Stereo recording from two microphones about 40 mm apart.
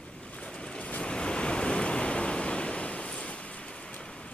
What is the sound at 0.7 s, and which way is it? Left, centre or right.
Waves, left.